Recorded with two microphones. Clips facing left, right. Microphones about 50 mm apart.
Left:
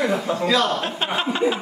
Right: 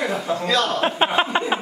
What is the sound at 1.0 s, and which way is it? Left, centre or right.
Speech, right.